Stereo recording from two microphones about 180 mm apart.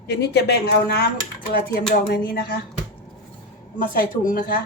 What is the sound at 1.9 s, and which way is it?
Speech, 55° left (ahead or behind).